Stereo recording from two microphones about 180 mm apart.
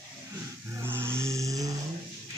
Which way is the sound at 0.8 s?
15° right (ahead or behind).